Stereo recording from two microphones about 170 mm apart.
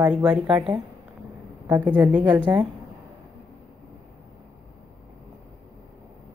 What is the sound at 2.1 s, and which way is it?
Speech, 10° right (ahead or behind).